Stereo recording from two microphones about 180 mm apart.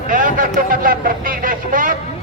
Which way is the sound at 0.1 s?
45° right (ahead or behind).